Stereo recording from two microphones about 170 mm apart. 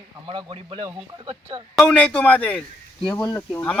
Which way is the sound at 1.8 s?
5° left (ahead or behind).